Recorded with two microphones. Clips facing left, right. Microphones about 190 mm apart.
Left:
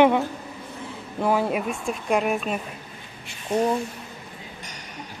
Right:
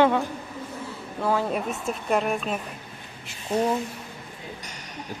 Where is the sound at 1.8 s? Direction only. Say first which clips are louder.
Left 1 dB; centre (ahead or behind).